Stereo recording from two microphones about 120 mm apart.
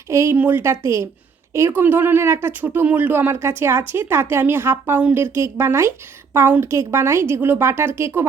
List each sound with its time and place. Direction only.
0.1 s speech: 25° right (ahead or behind)